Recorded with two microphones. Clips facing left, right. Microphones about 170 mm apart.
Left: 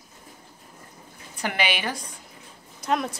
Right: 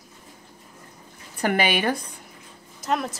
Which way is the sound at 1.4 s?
50° right (ahead or behind).